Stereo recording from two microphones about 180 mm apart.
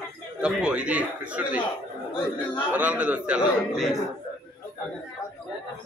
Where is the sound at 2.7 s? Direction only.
10° right (ahead or behind).